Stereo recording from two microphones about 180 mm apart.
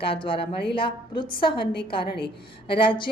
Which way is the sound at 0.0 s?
30° left (ahead or behind).